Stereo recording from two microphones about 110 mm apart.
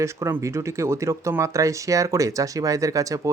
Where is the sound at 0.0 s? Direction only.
25° right (ahead or behind).